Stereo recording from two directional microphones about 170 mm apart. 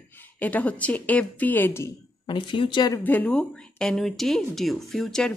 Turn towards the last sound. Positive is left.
turn(degrees=5)  # may be behind; listen again after turning